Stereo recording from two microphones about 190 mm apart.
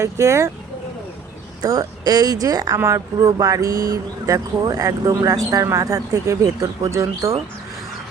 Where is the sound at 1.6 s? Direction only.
20° right (ahead or behind).